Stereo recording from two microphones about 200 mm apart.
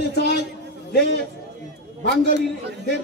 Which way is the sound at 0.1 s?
55° left (ahead or behind).